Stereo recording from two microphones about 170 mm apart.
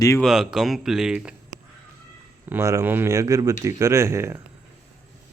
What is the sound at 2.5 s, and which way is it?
Speech, 15° right (ahead or behind).